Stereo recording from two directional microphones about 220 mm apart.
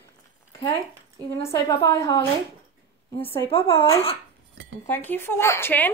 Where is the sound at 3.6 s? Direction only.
10° left (ahead or behind).